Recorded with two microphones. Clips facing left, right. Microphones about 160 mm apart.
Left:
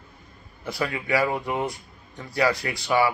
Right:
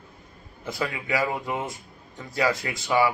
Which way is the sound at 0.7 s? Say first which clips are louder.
Left 2 dB; 20° right (ahead or behind).